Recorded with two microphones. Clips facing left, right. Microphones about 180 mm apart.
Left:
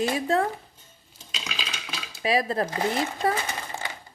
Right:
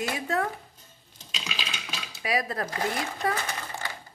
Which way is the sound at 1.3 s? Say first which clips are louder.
Left 1 dB; centre (ahead or behind).